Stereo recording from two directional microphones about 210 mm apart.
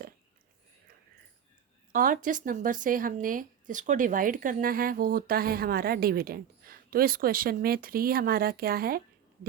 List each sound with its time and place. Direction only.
1.9 s speech: 40° right (ahead or behind)